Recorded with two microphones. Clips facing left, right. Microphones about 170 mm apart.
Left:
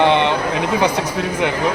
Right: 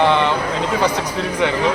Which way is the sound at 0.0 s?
20° left (ahead or behind).